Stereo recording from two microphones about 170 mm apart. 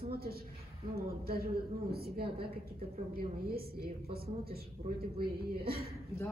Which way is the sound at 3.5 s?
65° right (ahead or behind).